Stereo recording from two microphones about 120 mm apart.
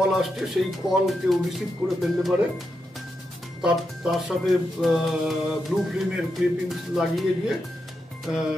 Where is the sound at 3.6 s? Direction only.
5° right (ahead or behind).